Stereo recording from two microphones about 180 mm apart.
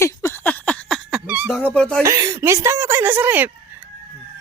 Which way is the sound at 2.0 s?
15° right (ahead or behind).